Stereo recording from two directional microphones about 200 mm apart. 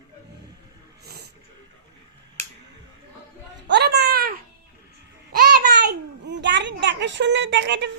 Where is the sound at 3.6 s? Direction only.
55° right (ahead or behind).